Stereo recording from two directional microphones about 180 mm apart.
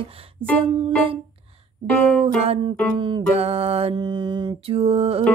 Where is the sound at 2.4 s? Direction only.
35° right (ahead or behind).